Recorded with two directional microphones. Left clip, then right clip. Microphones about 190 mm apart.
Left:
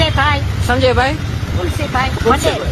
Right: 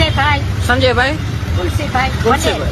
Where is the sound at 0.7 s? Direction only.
5° left (ahead or behind).